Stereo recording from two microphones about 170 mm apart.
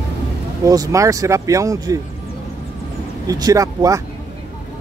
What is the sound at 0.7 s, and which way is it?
Speech, 20° right (ahead or behind).